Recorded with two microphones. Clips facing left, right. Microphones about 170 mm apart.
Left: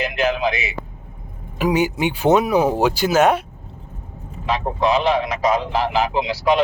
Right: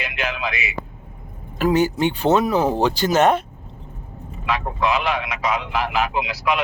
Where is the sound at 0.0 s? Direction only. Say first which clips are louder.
Left 7 dB; 40° left (ahead or behind).